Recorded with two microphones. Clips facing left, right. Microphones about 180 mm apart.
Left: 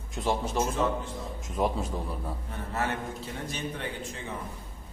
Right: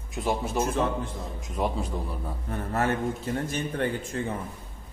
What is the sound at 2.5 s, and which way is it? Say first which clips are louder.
A man's voice: right 6 dB; 50° right (ahead or behind).